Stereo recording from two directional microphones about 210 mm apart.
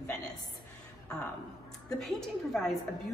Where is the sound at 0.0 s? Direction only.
5° left (ahead or behind).